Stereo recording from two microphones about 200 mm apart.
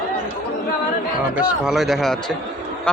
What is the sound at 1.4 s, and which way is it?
Speech, centre (ahead or behind).